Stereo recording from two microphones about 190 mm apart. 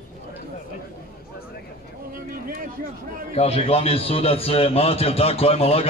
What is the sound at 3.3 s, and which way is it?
A man's voice, 30° left (ahead or behind).